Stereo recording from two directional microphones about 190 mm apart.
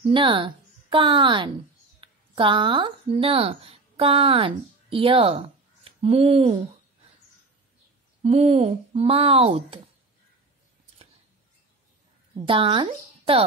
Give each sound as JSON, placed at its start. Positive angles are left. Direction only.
{"t": 0.0, "sound": "a woman's voice", "side_deg": -25}
{"t": 8.2, "sound": "speech", "side_deg": -35}
{"t": 12.4, "sound": "speech", "side_deg": -25}